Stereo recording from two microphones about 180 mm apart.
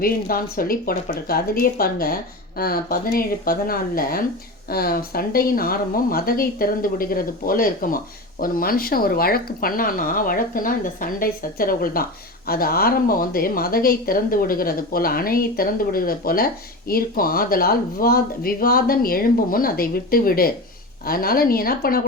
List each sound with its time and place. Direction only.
0.0 s speech: 55° left (ahead or behind)